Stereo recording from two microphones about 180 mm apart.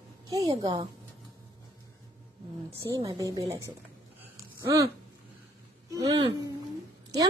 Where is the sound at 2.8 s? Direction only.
20° right (ahead or behind).